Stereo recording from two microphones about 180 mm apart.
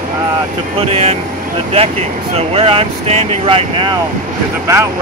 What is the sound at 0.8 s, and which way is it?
Speech, 35° right (ahead or behind).